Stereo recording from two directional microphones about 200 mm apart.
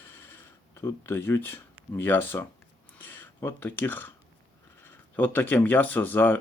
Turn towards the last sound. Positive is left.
turn(degrees=10)  # may be behind; listen again after turning